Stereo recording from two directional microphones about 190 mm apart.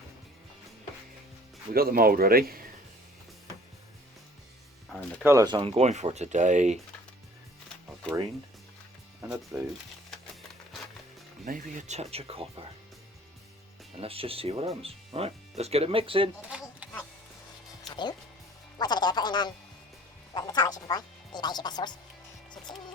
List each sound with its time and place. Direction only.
1.7 s speech: 50° right (ahead or behind)
5.2 s speech: 15° right (ahead or behind); by 6.7 s 40° right (ahead or behind)
9.2 s speech: 20° right (ahead or behind)
11.4 s speech: 40° right (ahead or behind)
14.0 s speech: 30° right (ahead or behind)
16.5 s a sound: 5° right (ahead or behind)
17.8 s music: 25° left (ahead or behind)
20.3 s speech: 20° left (ahead or behind)
22.7 s music: 25° left (ahead or behind)